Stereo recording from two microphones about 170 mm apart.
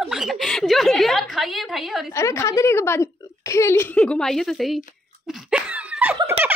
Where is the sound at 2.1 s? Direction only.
15° left (ahead or behind); by 4.8 s centre (ahead or behind).